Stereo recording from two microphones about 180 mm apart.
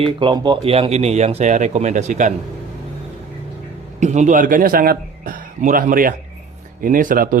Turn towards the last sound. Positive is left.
turn(degrees=-50)  # may be behind; listen again after turning